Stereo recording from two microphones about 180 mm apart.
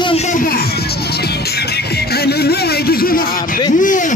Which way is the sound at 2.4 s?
55° left (ahead or behind).